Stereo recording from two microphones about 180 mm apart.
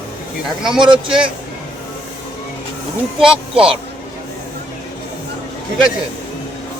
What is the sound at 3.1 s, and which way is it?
Speech, 5° right (ahead or behind).